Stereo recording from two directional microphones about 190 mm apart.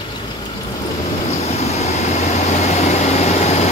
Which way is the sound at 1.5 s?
35° left (ahead or behind).